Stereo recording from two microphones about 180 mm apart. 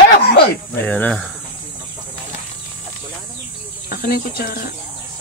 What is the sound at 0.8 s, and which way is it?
Speech, 5° left (ahead or behind).